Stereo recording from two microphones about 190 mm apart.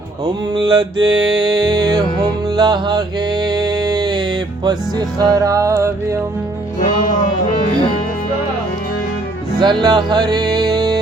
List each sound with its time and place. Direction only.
0.3 s music: 20° right (ahead or behind)
3.4 s a sound: 20° right (ahead or behind)
4.6 s music: 20° right (ahead or behind)
6.7 s music: 40° left (ahead or behind)
9.6 s music: 20° right (ahead or behind)